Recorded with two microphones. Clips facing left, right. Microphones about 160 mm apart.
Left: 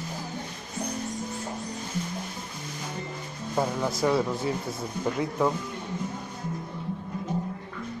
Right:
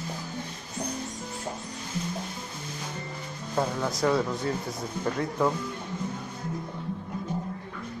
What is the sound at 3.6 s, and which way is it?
Speech, 5° left (ahead or behind).